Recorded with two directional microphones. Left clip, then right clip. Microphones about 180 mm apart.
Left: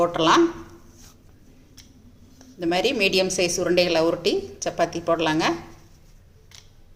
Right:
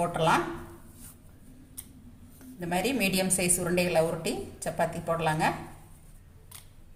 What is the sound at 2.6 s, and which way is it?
A woman's voice, 45° left (ahead or behind).